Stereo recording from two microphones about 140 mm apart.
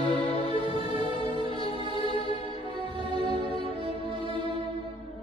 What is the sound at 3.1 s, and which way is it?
Music, 35° right (ahead or behind).